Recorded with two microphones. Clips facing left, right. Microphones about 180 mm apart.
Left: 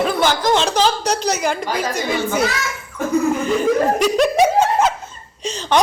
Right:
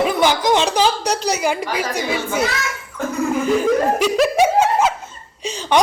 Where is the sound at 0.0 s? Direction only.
15° right (ahead or behind).